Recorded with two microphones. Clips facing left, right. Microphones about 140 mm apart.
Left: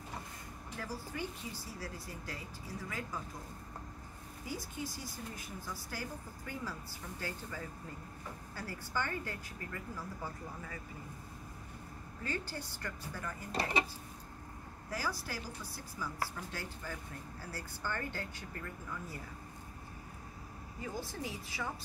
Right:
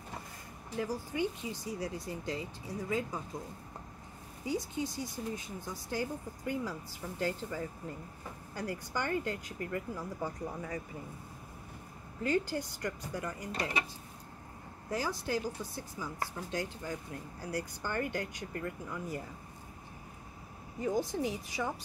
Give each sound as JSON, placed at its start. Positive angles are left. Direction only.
{"t": 0.7, "sound": "speech", "side_deg": -15}
{"t": 4.5, "sound": "speech", "side_deg": -20}
{"t": 12.2, "sound": "speech", "side_deg": -15}
{"t": 14.9, "sound": "speech", "side_deg": -20}
{"t": 20.8, "sound": "speech", "side_deg": -15}